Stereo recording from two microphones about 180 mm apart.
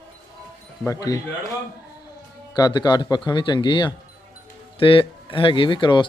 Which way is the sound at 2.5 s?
20° left (ahead or behind).